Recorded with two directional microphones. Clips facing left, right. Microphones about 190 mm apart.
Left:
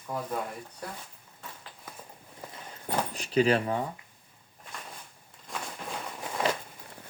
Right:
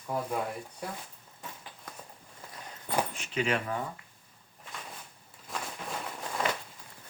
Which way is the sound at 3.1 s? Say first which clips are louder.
Left 6 dB; 35° left (ahead or behind).